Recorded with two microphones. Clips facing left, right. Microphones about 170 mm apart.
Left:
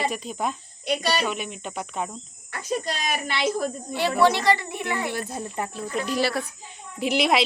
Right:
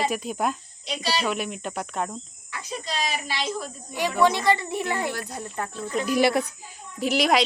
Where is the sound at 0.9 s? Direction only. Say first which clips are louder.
Left 4 dB; 55° left (ahead or behind).